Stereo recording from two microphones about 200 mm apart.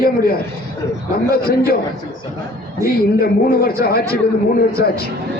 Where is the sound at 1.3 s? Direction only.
50° left (ahead or behind).